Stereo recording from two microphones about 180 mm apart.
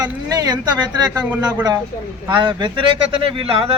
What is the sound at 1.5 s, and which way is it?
Speech, 20° right (ahead or behind).